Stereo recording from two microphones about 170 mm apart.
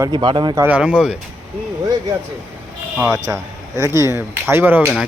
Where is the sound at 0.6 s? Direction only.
10° right (ahead or behind).